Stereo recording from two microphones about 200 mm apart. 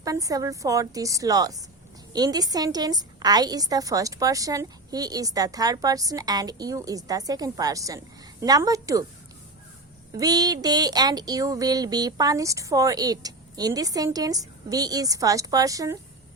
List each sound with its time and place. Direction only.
0.0 s a woman's voice: 15° right (ahead or behind)
10.1 s a woman's voice: 20° right (ahead or behind)